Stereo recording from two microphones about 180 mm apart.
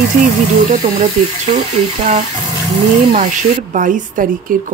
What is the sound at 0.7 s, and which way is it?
Speech, 50° right (ahead or behind).